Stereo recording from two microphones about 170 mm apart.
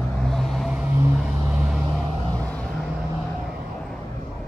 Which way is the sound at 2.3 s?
5° left (ahead or behind).